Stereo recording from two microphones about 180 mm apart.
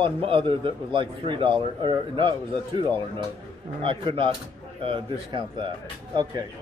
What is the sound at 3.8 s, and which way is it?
A man's voice, 30° right (ahead or behind).